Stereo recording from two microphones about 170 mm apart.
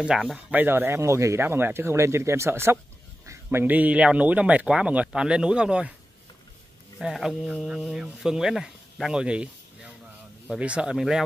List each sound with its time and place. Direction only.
0.0 s speech: 5° right (ahead or behind)
7.0 s speech: centre (ahead or behind)